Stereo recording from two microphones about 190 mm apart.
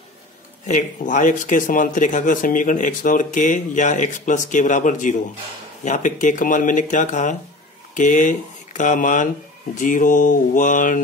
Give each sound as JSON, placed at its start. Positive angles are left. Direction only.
{"t": 0.7, "sound": "speech", "side_deg": 40}
{"t": 9.8, "sound": "mantra", "side_deg": 45}